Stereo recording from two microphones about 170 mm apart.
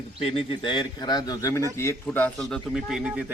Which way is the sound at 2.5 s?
Centre (ahead or behind).